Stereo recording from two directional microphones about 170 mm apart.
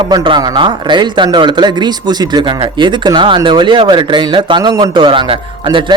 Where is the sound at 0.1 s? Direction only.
25° right (ahead or behind).